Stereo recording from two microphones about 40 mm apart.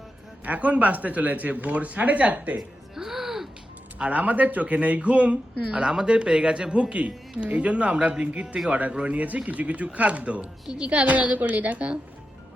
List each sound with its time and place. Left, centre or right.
0.4 s speech: right
2.6 s music: centre
3.9 s speech: right
8.9 s speech: right
9.1 s speech: right